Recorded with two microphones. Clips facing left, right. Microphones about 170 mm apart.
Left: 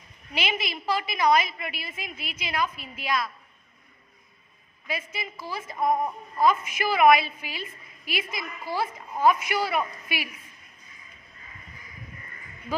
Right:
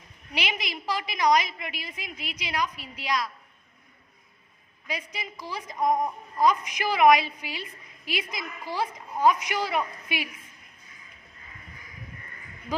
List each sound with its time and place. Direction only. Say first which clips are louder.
0.3 s a woman's voice: left 2 dB; 15° right (ahead or behind)
4.9 s a woman's voice: left 2 dB; 15° right (ahead or behind)